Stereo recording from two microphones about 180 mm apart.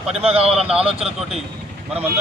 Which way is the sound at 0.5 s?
5° right (ahead or behind).